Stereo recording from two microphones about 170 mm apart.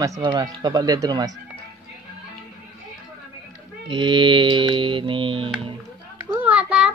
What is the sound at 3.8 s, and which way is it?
Speech, 30° right (ahead or behind).